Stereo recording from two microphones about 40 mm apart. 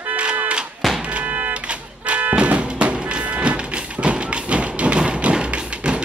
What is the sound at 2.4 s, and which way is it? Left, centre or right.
Music, right.